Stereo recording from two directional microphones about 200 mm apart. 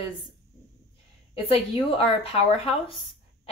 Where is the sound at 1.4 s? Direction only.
30° left (ahead or behind).